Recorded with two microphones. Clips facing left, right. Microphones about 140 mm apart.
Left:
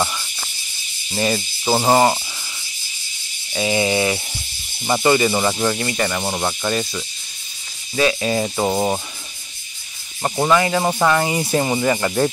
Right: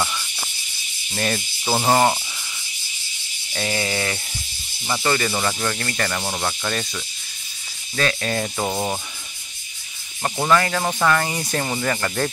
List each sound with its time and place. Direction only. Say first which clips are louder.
0.0 s snake: left 3 dB; 15° left (ahead or behind)
1.1 s speech: left 4 dB; 10° left (ahead or behind)
3.5 s speech: left 6 dB; 15° left (ahead or behind)
10.2 s speech: left 2 dB; 10° left (ahead or behind)